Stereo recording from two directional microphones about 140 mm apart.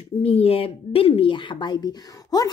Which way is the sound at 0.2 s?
45° left (ahead or behind).